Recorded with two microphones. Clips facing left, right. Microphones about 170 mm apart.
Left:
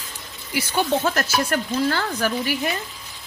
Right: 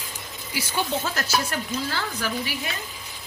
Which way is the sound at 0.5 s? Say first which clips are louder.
Left 5 dB; 55° left (ahead or behind).